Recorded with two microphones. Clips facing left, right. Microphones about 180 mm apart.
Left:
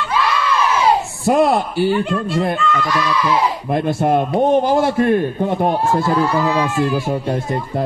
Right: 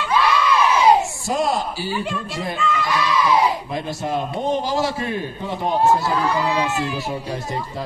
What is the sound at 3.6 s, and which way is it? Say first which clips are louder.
A man's voice: left 9 dB; 55° left (ahead or behind).